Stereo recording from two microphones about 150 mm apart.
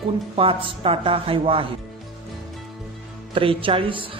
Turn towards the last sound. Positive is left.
turn(degrees=-35)  # may be behind; listen again after turning